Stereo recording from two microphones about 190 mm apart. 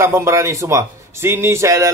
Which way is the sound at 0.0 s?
15° right (ahead or behind).